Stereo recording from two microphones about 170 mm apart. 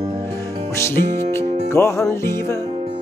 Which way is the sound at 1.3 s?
15° left (ahead or behind).